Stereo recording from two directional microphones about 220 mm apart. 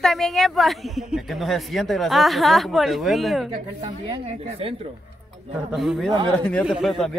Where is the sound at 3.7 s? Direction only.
20° right (ahead or behind).